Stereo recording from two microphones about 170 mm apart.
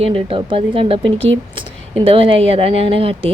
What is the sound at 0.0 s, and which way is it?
Speech, 35° right (ahead or behind).